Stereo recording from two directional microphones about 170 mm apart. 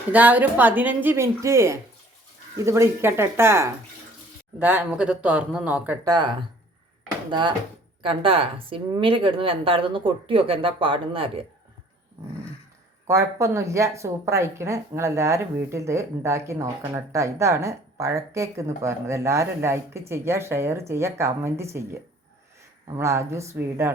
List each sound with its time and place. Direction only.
0.1 s a woman's voice: 10° right (ahead or behind)
6.1 s a woman's voice: 25° right (ahead or behind)
13.1 s a woman's voice: 20° right (ahead or behind)
22.9 s a woman's voice: 15° right (ahead or behind)